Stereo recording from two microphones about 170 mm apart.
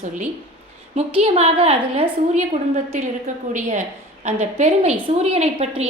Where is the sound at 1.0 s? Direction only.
35° right (ahead or behind).